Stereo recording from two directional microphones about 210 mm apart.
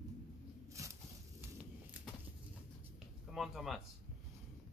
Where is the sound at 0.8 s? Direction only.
15° right (ahead or behind).